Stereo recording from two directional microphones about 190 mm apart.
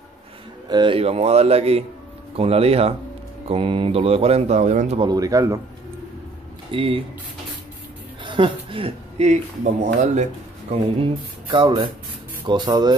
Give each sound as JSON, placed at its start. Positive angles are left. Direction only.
{"t": 0.7, "sound": "speech", "side_deg": -25}
{"t": 6.7, "sound": "speech", "side_deg": -30}
{"t": 8.2, "sound": "speech", "side_deg": -25}
{"t": 10.7, "sound": "speech", "side_deg": -30}